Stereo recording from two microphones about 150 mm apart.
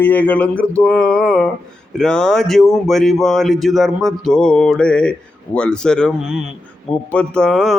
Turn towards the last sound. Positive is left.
turn(degrees=0)  # may be behind; listen again after turning